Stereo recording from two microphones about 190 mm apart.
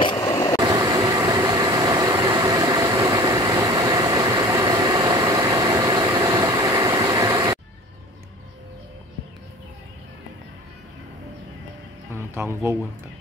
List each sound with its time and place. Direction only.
0.2 s vehicle: 15° left (ahead or behind)
0.6 s vehicle: 20° right (ahead or behind)
12.1 s music: 15° right (ahead or behind)